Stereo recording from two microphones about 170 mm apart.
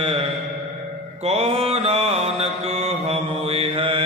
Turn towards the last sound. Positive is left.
turn(degrees=-35)  # may be behind; listen again after turning